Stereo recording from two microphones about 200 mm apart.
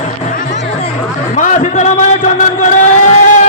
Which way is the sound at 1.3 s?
40° left (ahead or behind).